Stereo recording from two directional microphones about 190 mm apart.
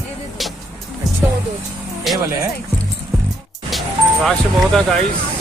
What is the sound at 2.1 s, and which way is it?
Speech, centre (ahead or behind).